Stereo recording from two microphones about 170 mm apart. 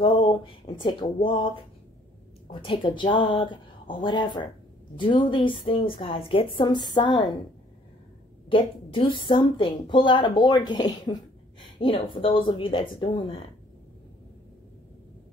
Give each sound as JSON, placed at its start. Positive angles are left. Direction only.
{"t": 0.0, "sound": "speech", "side_deg": 30}
{"t": 2.5, "sound": "a woman's voice", "side_deg": 30}
{"t": 8.5, "sound": "a woman's voice", "side_deg": 30}